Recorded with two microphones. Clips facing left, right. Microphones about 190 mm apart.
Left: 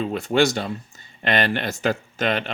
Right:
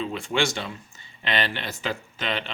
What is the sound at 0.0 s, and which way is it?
Speech, 45° left (ahead or behind).